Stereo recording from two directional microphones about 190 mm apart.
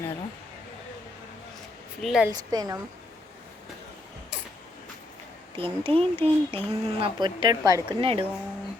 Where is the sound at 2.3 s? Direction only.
20° right (ahead or behind).